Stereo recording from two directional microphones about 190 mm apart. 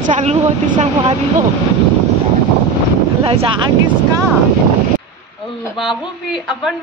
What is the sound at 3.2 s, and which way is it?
Speech, 25° right (ahead or behind).